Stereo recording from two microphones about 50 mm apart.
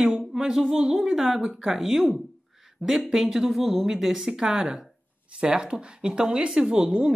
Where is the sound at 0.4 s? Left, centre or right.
Centre.